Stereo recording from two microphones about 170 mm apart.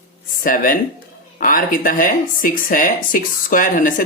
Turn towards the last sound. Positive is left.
turn(degrees=50)  # may be behind; listen again after turning